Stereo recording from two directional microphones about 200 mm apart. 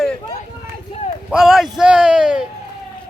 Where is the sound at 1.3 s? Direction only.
Centre (ahead or behind).